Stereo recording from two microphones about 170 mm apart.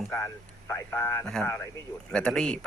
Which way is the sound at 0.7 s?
15° left (ahead or behind).